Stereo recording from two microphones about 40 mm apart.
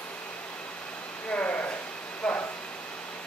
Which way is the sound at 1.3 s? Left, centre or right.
Left.